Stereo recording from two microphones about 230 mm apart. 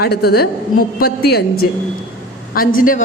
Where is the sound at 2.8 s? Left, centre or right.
Left.